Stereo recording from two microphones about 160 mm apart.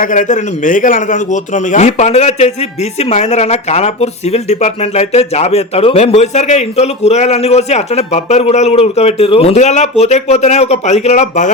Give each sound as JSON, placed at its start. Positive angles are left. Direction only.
{"t": 0.0, "sound": "a man's voice", "side_deg": 55}